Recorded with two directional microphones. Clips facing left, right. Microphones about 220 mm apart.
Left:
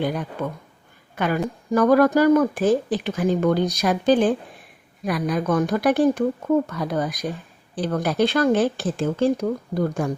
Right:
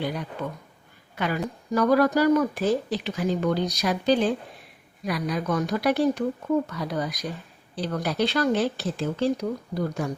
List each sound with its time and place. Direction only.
0.0 s speech: 50° left (ahead or behind)